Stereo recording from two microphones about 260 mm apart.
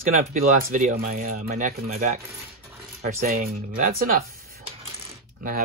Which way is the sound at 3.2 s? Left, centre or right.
Right.